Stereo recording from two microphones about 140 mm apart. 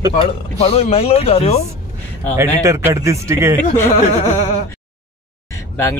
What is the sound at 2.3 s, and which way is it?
A man's voice, 20° right (ahead or behind).